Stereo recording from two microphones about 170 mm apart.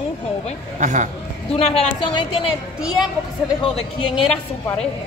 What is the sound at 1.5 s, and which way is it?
Speech, 35° left (ahead or behind).